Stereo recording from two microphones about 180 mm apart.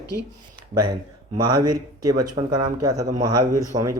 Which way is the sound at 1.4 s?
25° right (ahead or behind).